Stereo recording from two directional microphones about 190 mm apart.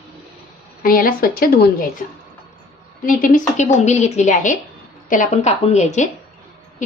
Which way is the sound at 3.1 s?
45° left (ahead or behind).